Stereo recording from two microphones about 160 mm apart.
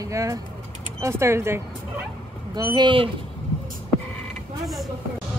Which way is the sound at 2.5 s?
25° right (ahead or behind).